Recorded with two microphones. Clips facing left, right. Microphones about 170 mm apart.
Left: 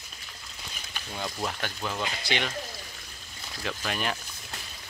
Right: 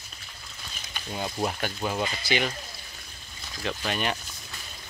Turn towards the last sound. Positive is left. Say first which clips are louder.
# right 2 dB
turn(degrees=0)  # may be behind; listen again after turning